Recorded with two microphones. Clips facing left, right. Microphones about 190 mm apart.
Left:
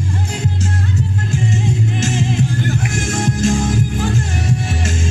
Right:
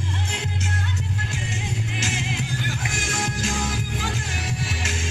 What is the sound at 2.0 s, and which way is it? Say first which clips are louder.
Music: left 12 dB; 45° left (ahead or behind).